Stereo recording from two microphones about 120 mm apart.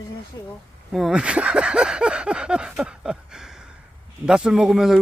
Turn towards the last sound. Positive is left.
turn(degrees=-5)  # may be behind; listen again after turning